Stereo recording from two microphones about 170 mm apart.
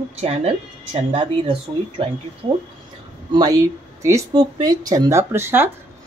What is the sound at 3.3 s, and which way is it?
Speech, 20° right (ahead or behind).